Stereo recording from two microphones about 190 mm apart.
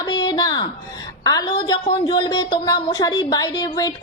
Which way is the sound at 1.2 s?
20° left (ahead or behind).